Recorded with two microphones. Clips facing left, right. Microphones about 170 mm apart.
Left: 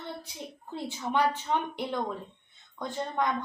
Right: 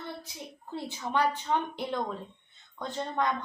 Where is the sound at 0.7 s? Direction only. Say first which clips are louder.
Left 1 dB; 15° left (ahead or behind).